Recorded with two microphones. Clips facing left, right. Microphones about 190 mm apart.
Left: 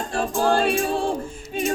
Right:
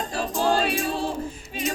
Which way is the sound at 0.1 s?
50° left (ahead or behind).